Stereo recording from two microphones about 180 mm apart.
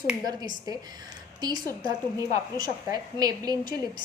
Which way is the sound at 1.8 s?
20° right (ahead or behind).